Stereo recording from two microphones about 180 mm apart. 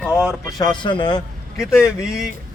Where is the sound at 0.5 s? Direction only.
25° left (ahead or behind).